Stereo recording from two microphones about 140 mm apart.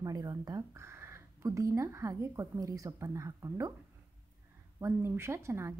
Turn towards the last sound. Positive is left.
turn(degrees=-20)  # may be behind; listen again after turning